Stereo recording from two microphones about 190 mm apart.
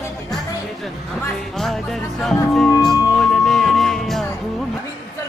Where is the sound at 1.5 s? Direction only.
Centre (ahead or behind).